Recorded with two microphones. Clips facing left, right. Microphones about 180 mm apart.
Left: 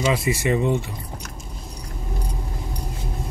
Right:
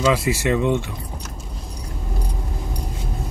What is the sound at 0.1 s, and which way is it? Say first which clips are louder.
Speech: right 2 dB; 90° right.